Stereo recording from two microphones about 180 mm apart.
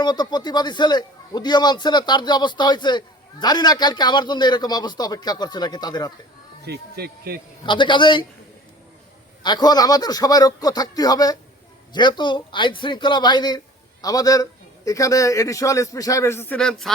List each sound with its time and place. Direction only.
0.0 s a man's voice: 25° left (ahead or behind)
6.7 s speech: 65° right (ahead or behind)
7.6 s a man's voice: 25° left (ahead or behind)
9.4 s a man's voice: 25° left (ahead or behind); by 16.9 s 5° left (ahead or behind)